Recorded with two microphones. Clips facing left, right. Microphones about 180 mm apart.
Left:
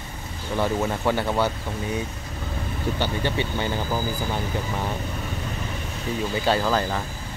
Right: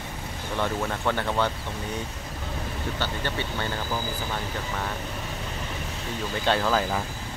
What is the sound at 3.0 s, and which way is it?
Speech, 15° left (ahead or behind).